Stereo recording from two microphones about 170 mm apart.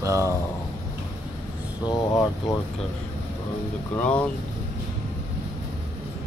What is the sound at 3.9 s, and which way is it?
Speech, 5° left (ahead or behind).